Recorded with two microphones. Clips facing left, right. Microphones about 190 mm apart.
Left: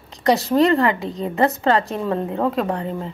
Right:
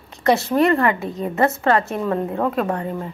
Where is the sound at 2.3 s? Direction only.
15° left (ahead or behind).